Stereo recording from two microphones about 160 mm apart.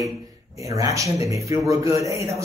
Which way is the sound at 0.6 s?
20° right (ahead or behind).